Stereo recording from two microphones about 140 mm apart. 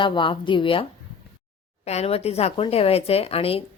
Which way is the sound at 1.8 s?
50° left (ahead or behind).